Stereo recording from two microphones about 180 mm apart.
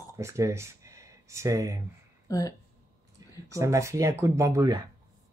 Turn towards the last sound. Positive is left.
turn(degrees=-20)  # may be behind; listen again after turning